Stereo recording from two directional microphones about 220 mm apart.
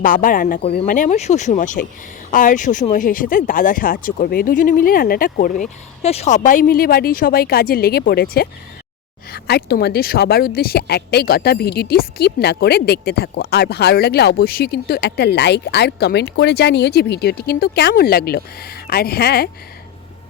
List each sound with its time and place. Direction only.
0.0 s a woman's voice: 35° left (ahead or behind)